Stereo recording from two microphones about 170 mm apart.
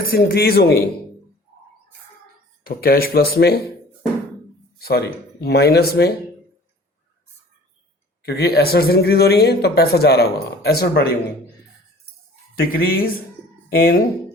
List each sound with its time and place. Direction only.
0.0 s speech: 60° left (ahead or behind)
2.6 s speech: 65° left (ahead or behind)
4.8 s speech: 65° left (ahead or behind)
8.2 s speech: 70° left (ahead or behind)
12.5 s speech: 60° left (ahead or behind)